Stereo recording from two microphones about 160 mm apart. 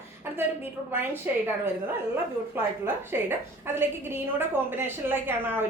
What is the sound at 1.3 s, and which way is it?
Speech, 10° right (ahead or behind).